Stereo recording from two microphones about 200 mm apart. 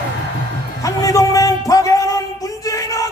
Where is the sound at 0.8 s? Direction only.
15° left (ahead or behind).